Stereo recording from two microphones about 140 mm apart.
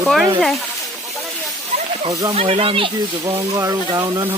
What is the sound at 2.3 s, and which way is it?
Speech, 45° right (ahead or behind).